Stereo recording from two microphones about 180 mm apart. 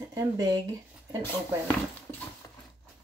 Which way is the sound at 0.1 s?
20° right (ahead or behind).